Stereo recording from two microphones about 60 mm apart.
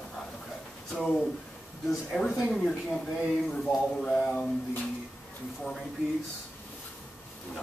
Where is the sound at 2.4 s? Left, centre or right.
Centre.